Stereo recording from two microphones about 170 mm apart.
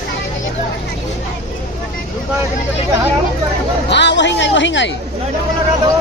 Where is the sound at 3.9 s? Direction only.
90° left.